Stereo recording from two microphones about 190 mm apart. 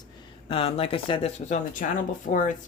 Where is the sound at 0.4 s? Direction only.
30° left (ahead or behind).